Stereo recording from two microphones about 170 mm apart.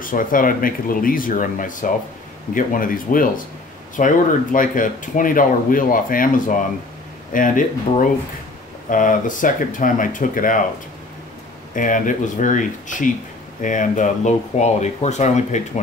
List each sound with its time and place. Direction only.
0.0 s speech: 55° left (ahead or behind)
11.7 s speech: 50° left (ahead or behind)